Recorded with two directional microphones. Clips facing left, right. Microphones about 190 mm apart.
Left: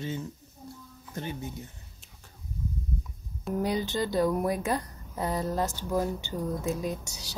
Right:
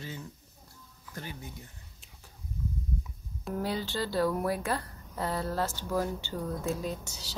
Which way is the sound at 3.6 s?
15° left (ahead or behind).